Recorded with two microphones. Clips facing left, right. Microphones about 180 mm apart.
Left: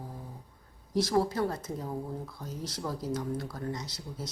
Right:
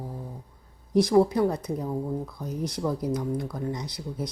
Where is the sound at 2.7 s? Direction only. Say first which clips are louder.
Right 5 dB; 15° right (ahead or behind).